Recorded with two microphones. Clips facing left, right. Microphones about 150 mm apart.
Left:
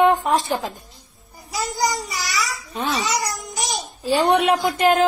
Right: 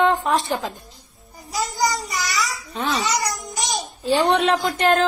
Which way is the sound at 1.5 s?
Centre (ahead or behind).